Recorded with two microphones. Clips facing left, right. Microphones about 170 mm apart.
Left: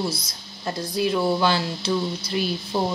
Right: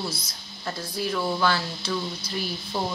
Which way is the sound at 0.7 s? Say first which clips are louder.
Left 6 dB; 20° left (ahead or behind).